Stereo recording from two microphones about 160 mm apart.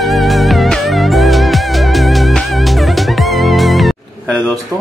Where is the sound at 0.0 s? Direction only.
Centre (ahead or behind).